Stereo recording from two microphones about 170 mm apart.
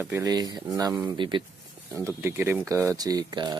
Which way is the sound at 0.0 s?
15° right (ahead or behind).